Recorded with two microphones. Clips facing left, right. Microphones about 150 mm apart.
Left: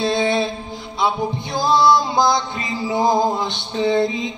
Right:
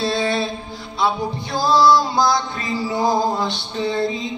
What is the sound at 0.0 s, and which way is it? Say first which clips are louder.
Mantra: left 2 dB; 20° left (ahead or behind).